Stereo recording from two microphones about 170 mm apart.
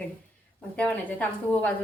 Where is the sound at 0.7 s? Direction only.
10° left (ahead or behind).